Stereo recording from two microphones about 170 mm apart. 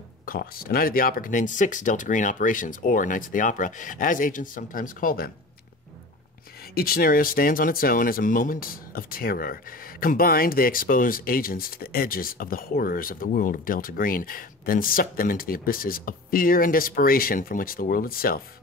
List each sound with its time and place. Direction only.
0.2 s speech: 60° left (ahead or behind)
6.7 s speech: 65° left (ahead or behind)